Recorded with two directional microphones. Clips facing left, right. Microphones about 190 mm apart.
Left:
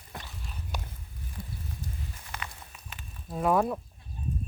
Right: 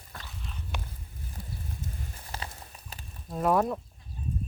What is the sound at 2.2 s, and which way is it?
Walk, 35° right (ahead or behind).